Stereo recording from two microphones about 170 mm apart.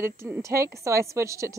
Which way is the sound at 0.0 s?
15° right (ahead or behind).